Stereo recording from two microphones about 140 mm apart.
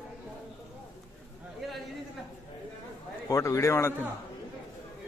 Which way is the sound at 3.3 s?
20° left (ahead or behind).